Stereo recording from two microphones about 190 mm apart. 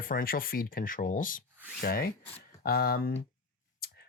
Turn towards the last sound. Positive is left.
turn(degrees=50)  # may be behind; listen again after turning